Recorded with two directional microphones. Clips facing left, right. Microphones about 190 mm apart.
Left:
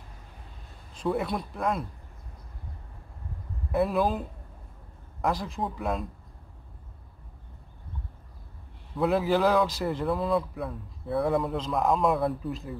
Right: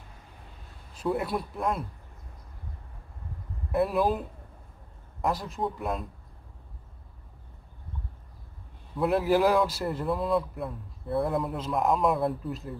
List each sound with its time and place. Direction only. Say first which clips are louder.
0.9 s a man's voice: even; 5° right (ahead or behind)
3.7 s a man's voice: even; centre (ahead or behind)
5.2 s a man's voice: even; centre (ahead or behind)
8.9 s a man's voice: even; centre (ahead or behind)